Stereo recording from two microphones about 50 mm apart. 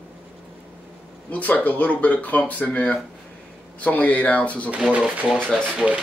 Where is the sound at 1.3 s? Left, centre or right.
Left.